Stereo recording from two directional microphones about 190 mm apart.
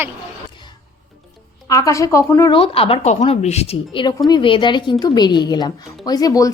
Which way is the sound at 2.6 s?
30° left (ahead or behind).